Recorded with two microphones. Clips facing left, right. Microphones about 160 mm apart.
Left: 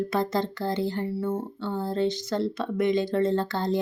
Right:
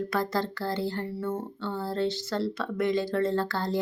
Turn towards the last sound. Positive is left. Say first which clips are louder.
# left 2 dB
turn(degrees=20)  # may be behind; listen again after turning